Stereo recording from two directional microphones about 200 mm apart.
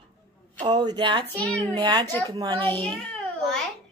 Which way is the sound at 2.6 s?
10° left (ahead or behind).